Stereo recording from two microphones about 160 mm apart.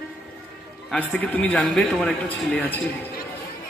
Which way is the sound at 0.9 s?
5° left (ahead or behind).